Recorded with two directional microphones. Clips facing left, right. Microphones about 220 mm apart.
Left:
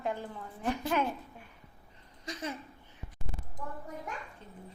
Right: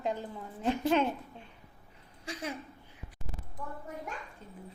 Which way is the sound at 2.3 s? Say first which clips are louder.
Even; 10° right (ahead or behind).